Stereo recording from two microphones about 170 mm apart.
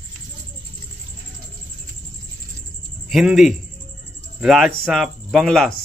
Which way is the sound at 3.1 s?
Centre (ahead or behind).